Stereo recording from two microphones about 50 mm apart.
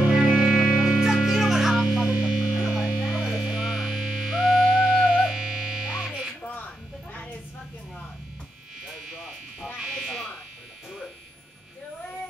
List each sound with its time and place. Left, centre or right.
0.0 s music: centre
6.4 s a sound: left
8.8 s electric shaver: centre
9.8 s buzzer: centre